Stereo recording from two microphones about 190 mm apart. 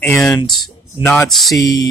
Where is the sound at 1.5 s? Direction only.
20° left (ahead or behind).